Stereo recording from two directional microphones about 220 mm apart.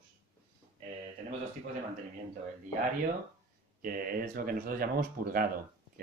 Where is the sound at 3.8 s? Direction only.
40° right (ahead or behind).